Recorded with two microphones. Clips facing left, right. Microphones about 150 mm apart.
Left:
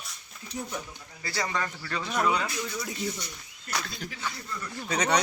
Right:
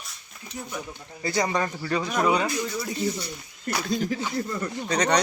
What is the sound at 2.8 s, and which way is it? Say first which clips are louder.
Speech: right 5 dB; centre (ahead or behind).